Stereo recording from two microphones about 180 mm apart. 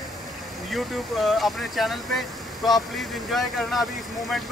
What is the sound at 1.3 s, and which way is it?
Speech, centre (ahead or behind).